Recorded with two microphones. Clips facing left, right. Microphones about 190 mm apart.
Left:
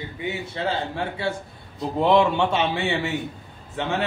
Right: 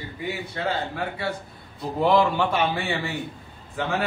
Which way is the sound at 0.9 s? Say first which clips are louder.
Left 2 dB; 25° left (ahead or behind).